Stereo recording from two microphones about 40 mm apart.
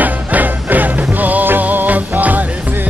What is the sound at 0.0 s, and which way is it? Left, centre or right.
Music, right.